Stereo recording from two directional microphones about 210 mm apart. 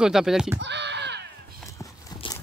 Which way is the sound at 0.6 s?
55° right (ahead or behind).